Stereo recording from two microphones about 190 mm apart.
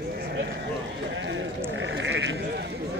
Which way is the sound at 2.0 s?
70° right (ahead or behind).